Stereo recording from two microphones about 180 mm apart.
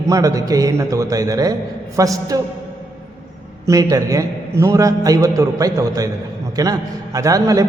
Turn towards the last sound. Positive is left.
turn(degrees=-20)  # may be behind; listen again after turning